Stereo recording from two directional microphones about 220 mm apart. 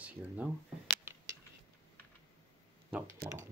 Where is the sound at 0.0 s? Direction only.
5° right (ahead or behind).